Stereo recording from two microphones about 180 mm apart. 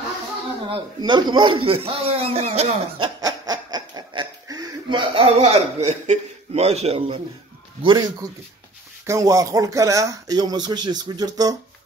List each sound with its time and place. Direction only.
1.0 s speech: 25° right (ahead or behind)
3.2 s snicker: 20° right (ahead or behind)
7.8 s speech: 25° right (ahead or behind)